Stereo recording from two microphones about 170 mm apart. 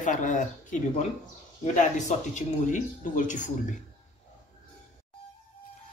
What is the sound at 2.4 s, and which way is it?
Speech, 50° left (ahead or behind).